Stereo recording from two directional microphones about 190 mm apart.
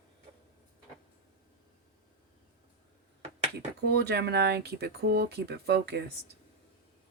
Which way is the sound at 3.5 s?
60° right (ahead or behind).